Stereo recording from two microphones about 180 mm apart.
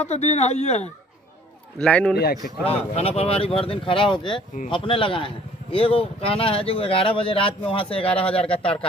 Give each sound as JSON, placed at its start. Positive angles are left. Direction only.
{"t": 0.0, "sound": "speech", "side_deg": 40}
{"t": 1.8, "sound": "a man's voice", "side_deg": 10}
{"t": 2.6, "sound": "speech", "side_deg": 35}